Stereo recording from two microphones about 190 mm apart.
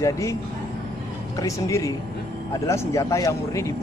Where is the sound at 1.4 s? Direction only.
15° left (ahead or behind).